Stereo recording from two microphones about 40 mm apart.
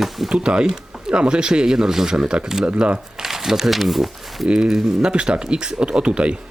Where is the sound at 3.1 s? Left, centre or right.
Centre.